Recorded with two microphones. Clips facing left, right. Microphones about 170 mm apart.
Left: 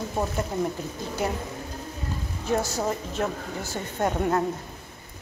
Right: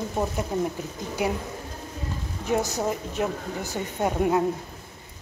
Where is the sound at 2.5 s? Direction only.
15° right (ahead or behind).